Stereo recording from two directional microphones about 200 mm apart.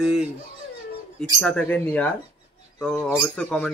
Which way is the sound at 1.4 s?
5° left (ahead or behind).